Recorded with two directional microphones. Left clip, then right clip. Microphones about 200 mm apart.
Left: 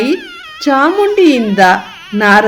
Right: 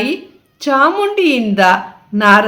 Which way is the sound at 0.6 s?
20° left (ahead or behind).